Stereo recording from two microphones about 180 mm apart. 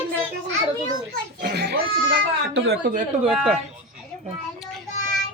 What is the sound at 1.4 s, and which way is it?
Speech, 60° right (ahead or behind).